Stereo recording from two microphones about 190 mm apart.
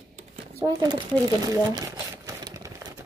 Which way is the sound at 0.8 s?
20° right (ahead or behind).